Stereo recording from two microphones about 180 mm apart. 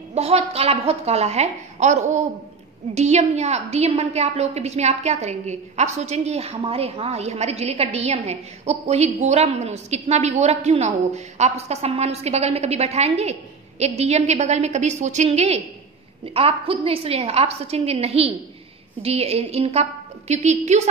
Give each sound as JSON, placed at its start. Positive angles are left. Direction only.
{"t": 0.1, "sound": "a woman's voice", "side_deg": -35}